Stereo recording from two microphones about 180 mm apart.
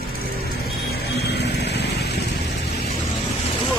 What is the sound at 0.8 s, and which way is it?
Vehicle, 60° left (ahead or behind).